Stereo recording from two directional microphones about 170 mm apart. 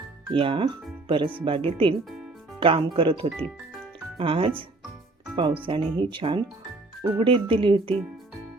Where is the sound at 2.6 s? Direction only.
30° right (ahead or behind).